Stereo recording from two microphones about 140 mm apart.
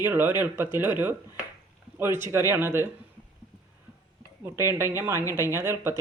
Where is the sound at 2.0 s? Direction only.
15° right (ahead or behind).